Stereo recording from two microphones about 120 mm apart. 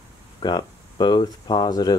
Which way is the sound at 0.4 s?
35° left (ahead or behind).